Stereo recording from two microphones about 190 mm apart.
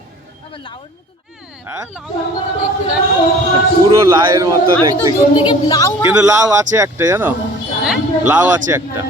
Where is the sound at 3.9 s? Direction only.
15° right (ahead or behind).